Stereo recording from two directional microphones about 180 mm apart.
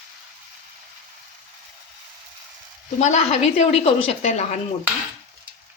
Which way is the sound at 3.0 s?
40° left (ahead or behind).